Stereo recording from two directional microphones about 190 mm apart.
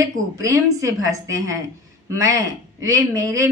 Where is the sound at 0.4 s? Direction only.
15° right (ahead or behind).